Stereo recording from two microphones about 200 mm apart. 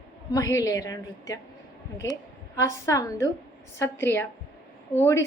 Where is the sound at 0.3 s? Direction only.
15° left (ahead or behind).